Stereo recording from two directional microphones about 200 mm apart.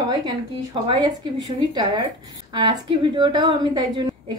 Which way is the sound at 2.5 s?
20° right (ahead or behind).